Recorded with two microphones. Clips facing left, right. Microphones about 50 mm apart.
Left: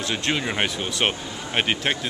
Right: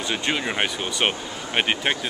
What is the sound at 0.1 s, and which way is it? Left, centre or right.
A man's voice, centre.